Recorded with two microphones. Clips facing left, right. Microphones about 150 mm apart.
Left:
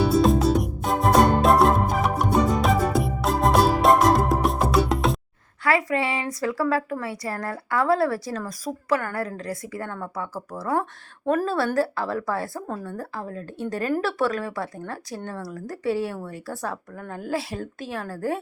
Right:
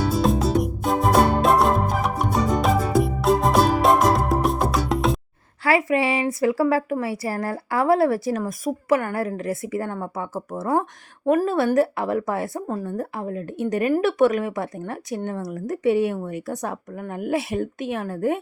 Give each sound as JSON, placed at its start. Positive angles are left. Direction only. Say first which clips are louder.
{"t": 0.2, "sound": "music", "louder": "left 1 dB", "side_deg": 0}
{"t": 5.6, "sound": "speech", "louder": "right 3 dB", "side_deg": -25}